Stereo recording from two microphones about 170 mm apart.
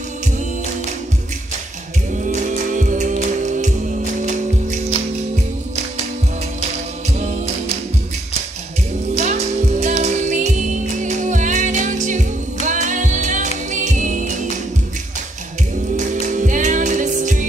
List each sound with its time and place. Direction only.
2.2 s music: 50° right (ahead or behind)
9.2 s music: 45° right (ahead or behind)
16.1 s music: 50° right (ahead or behind)